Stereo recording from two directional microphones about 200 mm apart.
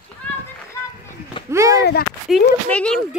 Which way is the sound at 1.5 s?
15° right (ahead or behind).